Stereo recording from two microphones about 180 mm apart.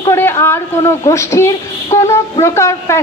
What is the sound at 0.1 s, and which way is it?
A woman's voice, 15° left (ahead or behind).